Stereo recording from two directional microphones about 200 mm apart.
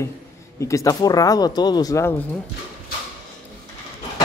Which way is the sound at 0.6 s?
15° left (ahead or behind).